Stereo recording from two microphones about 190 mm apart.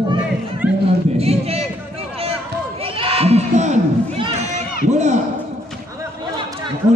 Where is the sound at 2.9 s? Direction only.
30° right (ahead or behind).